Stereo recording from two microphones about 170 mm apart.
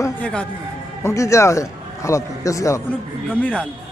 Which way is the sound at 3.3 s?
10° left (ahead or behind).